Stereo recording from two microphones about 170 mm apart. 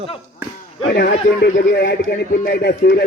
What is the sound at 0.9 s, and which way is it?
Speech, 75° left (ahead or behind).